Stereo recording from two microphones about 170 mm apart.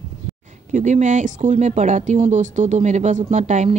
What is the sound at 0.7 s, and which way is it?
Speech, 45° right (ahead or behind).